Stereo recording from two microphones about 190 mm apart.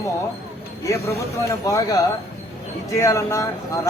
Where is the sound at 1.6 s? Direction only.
20° left (ahead or behind).